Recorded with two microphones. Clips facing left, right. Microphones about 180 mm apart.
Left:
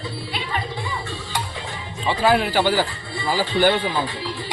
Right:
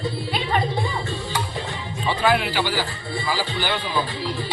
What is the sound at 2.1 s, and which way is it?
A man's voice, 30° left (ahead or behind).